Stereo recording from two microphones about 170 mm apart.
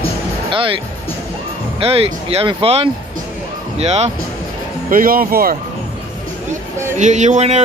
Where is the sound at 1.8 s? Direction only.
35° right (ahead or behind).